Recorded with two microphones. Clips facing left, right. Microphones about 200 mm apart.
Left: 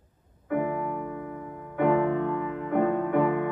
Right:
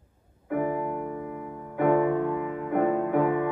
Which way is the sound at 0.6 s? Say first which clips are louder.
Right 1 dB; 40° right (ahead or behind).